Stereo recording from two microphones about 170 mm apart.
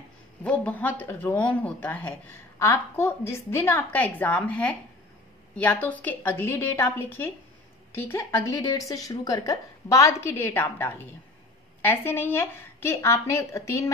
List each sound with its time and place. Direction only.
0.4 s speech: 10° left (ahead or behind)